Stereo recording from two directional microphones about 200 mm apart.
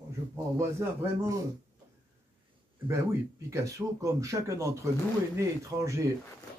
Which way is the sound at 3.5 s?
15° right (ahead or behind).